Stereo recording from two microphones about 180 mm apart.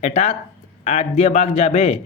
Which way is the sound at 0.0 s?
40° left (ahead or behind).